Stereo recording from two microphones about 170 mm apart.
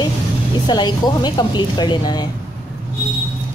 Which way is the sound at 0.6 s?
25° left (ahead or behind).